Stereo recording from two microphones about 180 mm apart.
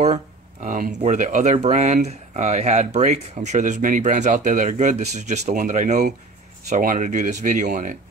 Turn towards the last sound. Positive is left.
turn(degrees=-45)  # may be behind; listen again after turning